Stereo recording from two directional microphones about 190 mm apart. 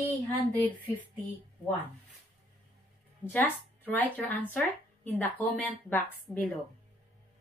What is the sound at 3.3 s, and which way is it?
Speech, 10° left (ahead or behind).